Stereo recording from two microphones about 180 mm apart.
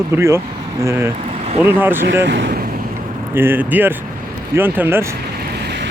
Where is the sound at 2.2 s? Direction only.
70° right (ahead or behind).